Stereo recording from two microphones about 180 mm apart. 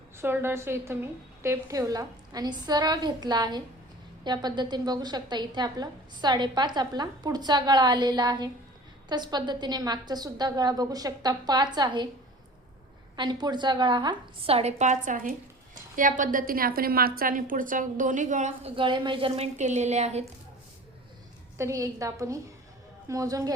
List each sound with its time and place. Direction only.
0.2 s a woman's voice: 15° right (ahead or behind)
13.1 s a woman's voice: 25° right (ahead or behind); by 18.7 s 40° right (ahead or behind)
18.8 s a woman's voice: 25° right (ahead or behind)
21.6 s a woman's voice: 15° right (ahead or behind)